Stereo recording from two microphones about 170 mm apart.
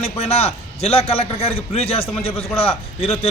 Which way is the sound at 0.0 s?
35° left (ahead or behind).